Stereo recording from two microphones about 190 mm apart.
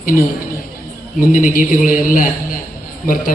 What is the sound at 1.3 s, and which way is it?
Speech, 45° left (ahead or behind).